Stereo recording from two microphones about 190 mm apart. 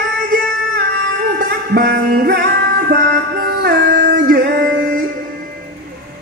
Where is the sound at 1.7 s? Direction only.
55° right (ahead or behind).